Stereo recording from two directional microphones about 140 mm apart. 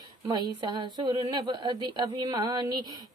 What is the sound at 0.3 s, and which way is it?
A woman's voice, 30° right (ahead or behind).